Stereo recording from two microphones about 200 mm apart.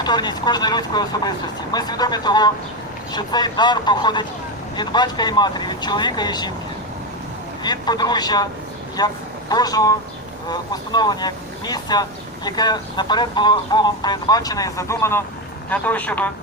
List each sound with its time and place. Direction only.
0.0 s speech: 20° left (ahead or behind)
7.6 s a man's voice: 20° left (ahead or behind)